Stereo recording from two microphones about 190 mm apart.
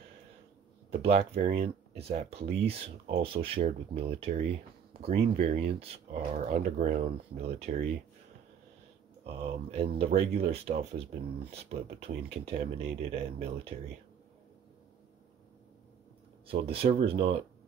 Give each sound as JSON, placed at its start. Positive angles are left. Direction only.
{"t": 0.8, "sound": "speech", "side_deg": -35}
{"t": 9.2, "sound": "speech", "side_deg": -35}
{"t": 12.0, "sound": "speech", "side_deg": -30}
{"t": 16.4, "sound": "speech", "side_deg": -30}